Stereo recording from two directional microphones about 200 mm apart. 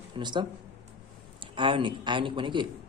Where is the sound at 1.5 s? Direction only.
25° right (ahead or behind).